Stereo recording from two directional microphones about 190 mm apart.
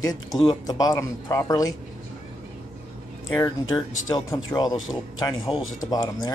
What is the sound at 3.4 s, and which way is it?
Speech, 20° left (ahead or behind).